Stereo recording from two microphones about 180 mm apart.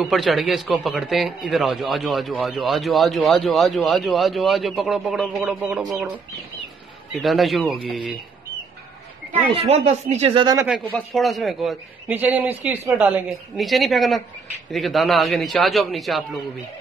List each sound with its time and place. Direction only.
0.0 s a man's voice: centre (ahead or behind)
7.2 s a man's voice: centre (ahead or behind)
9.5 s speech: 35° right (ahead or behind)
10.9 s a man's voice: centre (ahead or behind)